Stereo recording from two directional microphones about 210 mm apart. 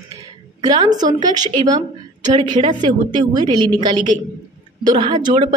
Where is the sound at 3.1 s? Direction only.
20° right (ahead or behind).